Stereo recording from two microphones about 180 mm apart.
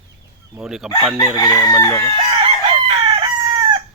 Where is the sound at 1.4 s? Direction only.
20° left (ahead or behind).